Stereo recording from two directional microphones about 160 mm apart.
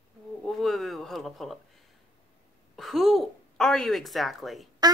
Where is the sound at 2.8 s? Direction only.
Centre (ahead or behind).